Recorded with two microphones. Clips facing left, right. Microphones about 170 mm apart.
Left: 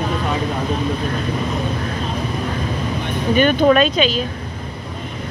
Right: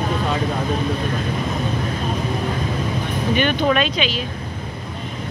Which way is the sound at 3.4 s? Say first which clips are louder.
Left 6 dB; 45° left (ahead or behind).